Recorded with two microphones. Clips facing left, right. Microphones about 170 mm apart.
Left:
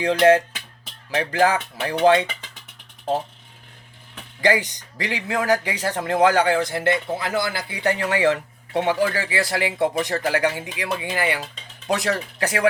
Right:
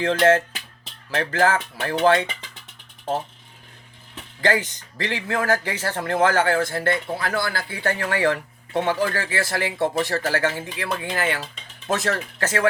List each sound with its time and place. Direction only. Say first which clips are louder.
0.0 s speech: left 2 dB; 15° left (ahead or behind)
4.4 s speech: left 2 dB; 15° left (ahead or behind)